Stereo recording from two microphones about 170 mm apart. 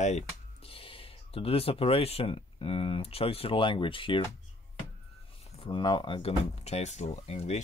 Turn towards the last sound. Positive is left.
turn(degrees=40)  # may be behind; listen again after turning